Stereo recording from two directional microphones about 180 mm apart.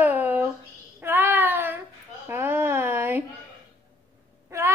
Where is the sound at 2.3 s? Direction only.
10° right (ahead or behind).